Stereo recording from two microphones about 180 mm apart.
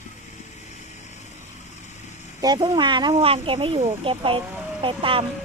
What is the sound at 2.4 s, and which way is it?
Speech, 25° right (ahead or behind).